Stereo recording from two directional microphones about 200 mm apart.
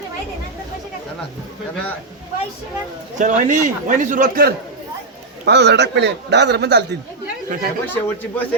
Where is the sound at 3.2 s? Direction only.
40° right (ahead or behind).